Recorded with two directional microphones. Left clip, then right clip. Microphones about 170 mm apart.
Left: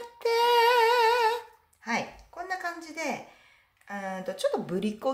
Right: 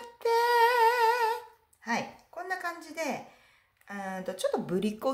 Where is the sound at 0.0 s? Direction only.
5° left (ahead or behind).